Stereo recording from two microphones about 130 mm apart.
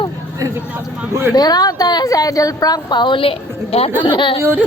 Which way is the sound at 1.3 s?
30° left (ahead or behind).